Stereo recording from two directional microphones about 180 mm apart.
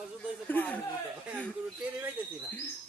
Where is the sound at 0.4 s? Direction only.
10° left (ahead or behind).